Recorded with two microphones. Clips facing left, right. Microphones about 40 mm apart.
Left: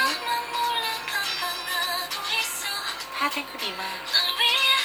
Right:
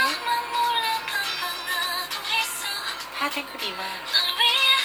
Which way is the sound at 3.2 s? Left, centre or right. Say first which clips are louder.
Left 1 dB; centre.